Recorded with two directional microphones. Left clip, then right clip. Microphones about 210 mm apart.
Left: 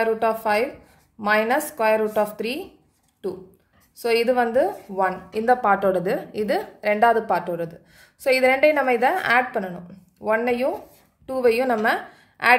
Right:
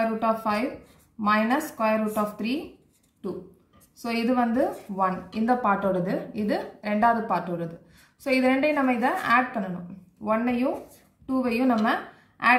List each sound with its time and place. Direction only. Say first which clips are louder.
0.2 s a woman's voice: left 4 dB; 55° left (ahead or behind)
4.0 s a woman's voice: left 6 dB; 50° left (ahead or behind)